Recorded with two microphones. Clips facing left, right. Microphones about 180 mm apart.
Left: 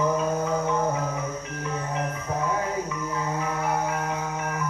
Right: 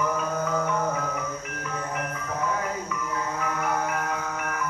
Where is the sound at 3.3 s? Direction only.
25° left (ahead or behind).